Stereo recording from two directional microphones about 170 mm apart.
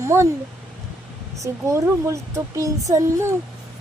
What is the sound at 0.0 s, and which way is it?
Speech, 15° right (ahead or behind).